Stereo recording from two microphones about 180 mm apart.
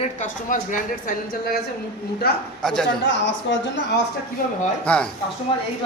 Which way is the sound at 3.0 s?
90° left.